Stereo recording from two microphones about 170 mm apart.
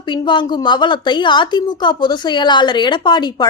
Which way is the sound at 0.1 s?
25° left (ahead or behind).